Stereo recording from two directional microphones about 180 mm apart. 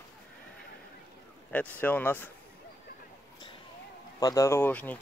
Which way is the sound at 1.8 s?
10° left (ahead or behind).